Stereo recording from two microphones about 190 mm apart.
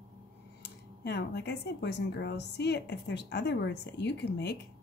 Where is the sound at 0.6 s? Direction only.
60° left (ahead or behind).